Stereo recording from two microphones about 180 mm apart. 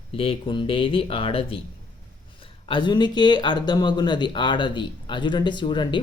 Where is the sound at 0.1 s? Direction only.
30° left (ahead or behind).